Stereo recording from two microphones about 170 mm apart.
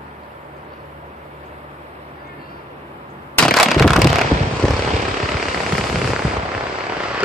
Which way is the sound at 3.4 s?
Centre (ahead or behind).